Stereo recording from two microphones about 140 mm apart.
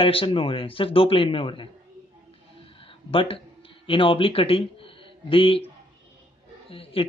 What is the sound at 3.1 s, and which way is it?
A man's voice, 40° left (ahead or behind).